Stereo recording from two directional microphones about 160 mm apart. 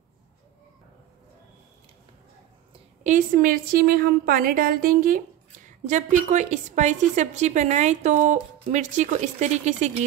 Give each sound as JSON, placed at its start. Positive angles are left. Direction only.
{"t": 3.0, "sound": "a woman's voice", "side_deg": -50}